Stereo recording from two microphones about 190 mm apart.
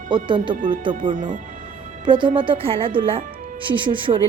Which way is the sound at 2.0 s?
25° right (ahead or behind).